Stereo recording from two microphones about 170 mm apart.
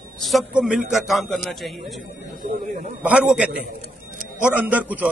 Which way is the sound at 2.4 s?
70° right (ahead or behind).